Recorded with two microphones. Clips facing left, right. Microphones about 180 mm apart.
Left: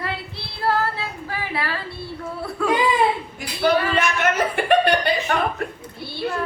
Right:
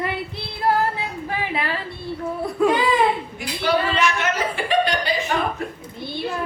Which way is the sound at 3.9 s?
50° left (ahead or behind).